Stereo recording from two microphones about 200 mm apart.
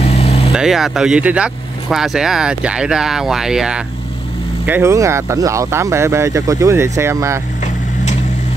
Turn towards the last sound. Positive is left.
turn(degrees=-15)  # may be behind; listen again after turning